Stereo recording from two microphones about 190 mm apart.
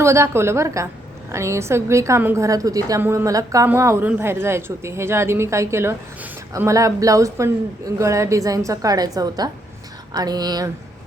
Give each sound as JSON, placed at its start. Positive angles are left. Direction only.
{"t": 0.0, "sound": "a woman's voice", "side_deg": -15}